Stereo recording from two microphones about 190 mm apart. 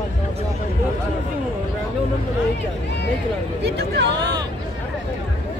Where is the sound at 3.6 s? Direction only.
65° right (ahead or behind).